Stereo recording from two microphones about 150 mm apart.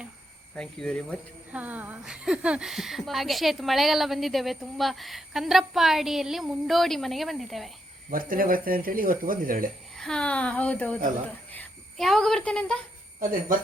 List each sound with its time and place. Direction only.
0.5 s speech: 5° left (ahead or behind)
1.5 s speech: 10° right (ahead or behind)
8.1 s speech: 70° right (ahead or behind)
10.0 s a woman's voice: 5° left (ahead or behind)
11.5 s a sound: 10° left (ahead or behind)
12.0 s speech: centre (ahead or behind)